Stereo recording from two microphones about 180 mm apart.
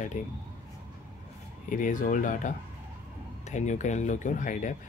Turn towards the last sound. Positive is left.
turn(degrees=45)  # may be behind; listen again after turning